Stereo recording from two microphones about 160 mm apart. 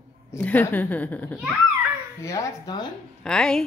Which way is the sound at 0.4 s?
10° left (ahead or behind).